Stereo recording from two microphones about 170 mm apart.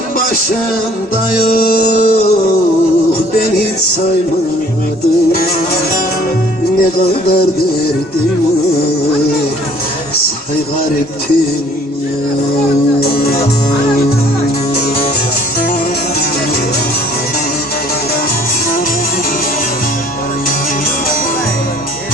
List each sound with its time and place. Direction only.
1.4 s music: 60° left (ahead or behind)